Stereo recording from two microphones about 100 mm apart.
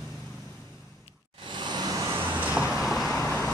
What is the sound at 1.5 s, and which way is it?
Vehicle, 45° right (ahead or behind).